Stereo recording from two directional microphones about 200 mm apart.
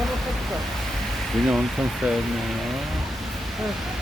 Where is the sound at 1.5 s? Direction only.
Centre (ahead or behind).